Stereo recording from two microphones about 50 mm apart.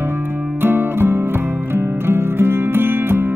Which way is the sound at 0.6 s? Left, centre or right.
Right.